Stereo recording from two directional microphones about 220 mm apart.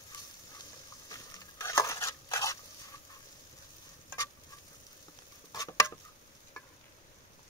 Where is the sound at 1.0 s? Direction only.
15° left (ahead or behind).